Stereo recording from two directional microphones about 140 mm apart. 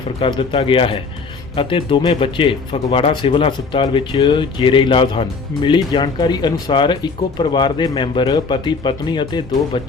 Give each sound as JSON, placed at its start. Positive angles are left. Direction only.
{"t": 0.2, "sound": "speech", "side_deg": 40}